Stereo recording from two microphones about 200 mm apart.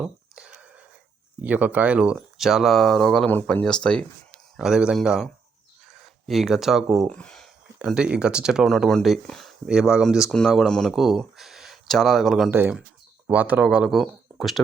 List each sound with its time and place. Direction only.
0.0 s whispering: 5° right (ahead or behind)
1.4 s speech: 10° right (ahead or behind)
5.9 s a sound: centre (ahead or behind)
6.9 s speech: 5° left (ahead or behind)